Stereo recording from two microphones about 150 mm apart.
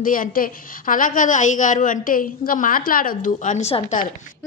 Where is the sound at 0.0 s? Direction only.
65° left (ahead or behind); by 4.0 s 45° left (ahead or behind).